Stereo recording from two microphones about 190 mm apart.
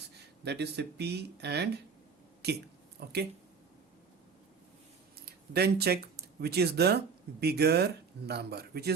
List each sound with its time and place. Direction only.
0.4 s speech: 60° right (ahead or behind)
5.2 s speech: 60° right (ahead or behind)